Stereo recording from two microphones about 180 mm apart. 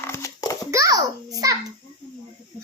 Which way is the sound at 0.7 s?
20° right (ahead or behind).